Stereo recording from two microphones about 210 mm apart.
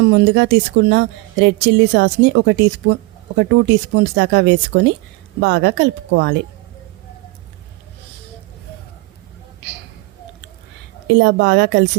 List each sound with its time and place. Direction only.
0.0 s speech: 55° right (ahead or behind)
11.1 s speech: 60° right (ahead or behind)